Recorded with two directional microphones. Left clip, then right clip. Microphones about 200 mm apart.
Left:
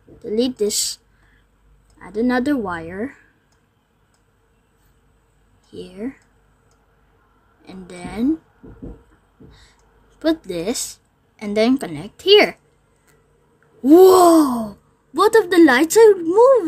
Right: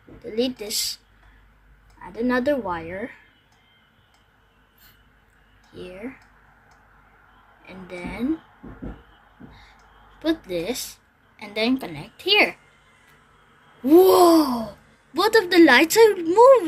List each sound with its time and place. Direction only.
0.2 s a woman's voice: 60° left (ahead or behind)
5.7 s a woman's voice: 60° left (ahead or behind)
7.6 s a woman's voice: 65° left (ahead or behind)
9.5 s a woman's voice: 60° left (ahead or behind)
13.8 s a woman's voice: 60° left (ahead or behind); by 16.6 s 40° left (ahead or behind)